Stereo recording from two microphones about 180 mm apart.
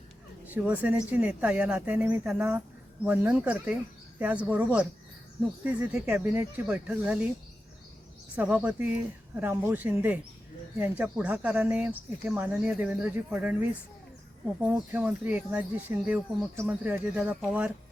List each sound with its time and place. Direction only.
0.4 s speech: 10° right (ahead or behind)
8.4 s speech: 10° right (ahead or behind)